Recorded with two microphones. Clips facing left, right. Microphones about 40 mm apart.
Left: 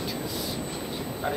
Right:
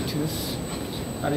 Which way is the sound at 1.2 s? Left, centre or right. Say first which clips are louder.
Right 4 dB; centre.